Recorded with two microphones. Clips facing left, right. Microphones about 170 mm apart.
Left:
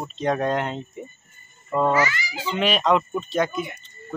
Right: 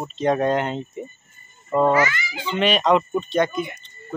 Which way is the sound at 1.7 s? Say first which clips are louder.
Right 3 dB; 15° right (ahead or behind).